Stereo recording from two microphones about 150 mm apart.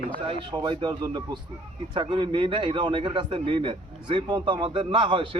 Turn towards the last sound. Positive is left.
turn(degrees=-35)  # may be behind; listen again after turning